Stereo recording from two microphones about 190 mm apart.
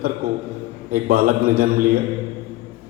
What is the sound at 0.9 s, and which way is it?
A man's voice, 50° right (ahead or behind).